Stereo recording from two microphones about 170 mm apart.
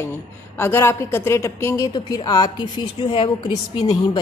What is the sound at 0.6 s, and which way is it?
A woman's voice, 15° left (ahead or behind).